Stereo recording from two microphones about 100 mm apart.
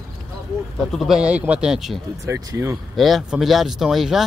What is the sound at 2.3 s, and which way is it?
Speech, 30° right (ahead or behind).